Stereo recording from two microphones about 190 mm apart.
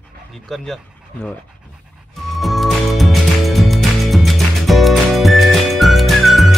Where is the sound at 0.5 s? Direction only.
Centre (ahead or behind).